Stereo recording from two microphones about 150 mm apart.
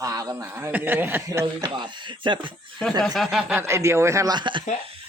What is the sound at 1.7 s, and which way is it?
Speech, 30° right (ahead or behind).